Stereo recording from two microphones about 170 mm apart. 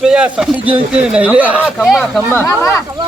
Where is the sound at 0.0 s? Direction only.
5° right (ahead or behind).